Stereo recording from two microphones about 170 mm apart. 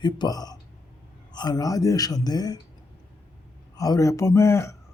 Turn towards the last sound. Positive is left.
turn(degrees=15)  # may be behind; listen again after turning